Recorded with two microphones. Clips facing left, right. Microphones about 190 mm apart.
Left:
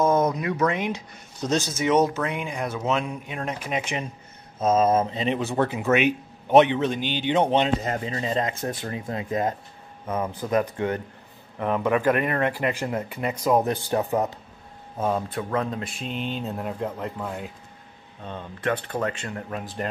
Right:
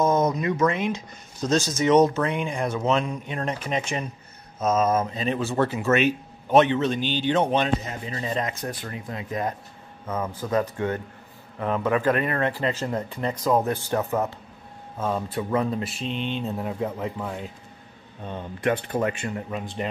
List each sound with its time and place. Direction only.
0.0 s a sound: 10° left (ahead or behind)
0.7 s speech: 15° left (ahead or behind)
4.6 s speech: 30° left (ahead or behind)
8.1 s speech: 30° left (ahead or behind)
10.0 s speech: 15° left (ahead or behind)
15.3 s speech: 5° right (ahead or behind)
18.2 s speech: 10° right (ahead or behind)
19.8 s speech: centre (ahead or behind)